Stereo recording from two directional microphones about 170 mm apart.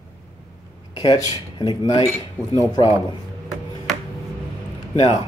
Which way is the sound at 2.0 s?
15° right (ahead or behind).